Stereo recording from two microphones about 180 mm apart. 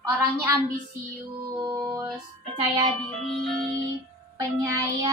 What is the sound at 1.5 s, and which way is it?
Music, 20° right (ahead or behind).